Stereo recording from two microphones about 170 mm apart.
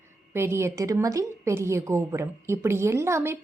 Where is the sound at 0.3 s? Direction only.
15° right (ahead or behind).